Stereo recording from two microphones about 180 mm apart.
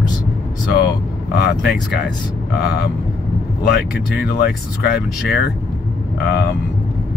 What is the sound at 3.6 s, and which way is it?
Speech, 60° left (ahead or behind).